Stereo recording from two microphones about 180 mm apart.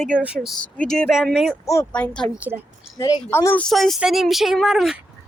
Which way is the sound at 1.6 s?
15° left (ahead or behind).